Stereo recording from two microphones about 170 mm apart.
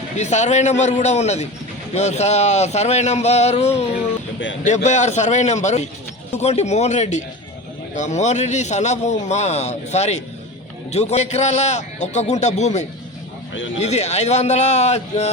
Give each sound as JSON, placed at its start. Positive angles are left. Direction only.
{"t": 0.2, "sound": "a man's voice", "side_deg": 45}